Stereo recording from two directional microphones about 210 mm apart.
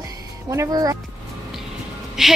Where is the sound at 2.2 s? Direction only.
Centre (ahead or behind).